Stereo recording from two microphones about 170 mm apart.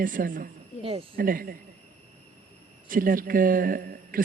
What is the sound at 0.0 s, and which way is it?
A woman's voice, 55° right (ahead or behind).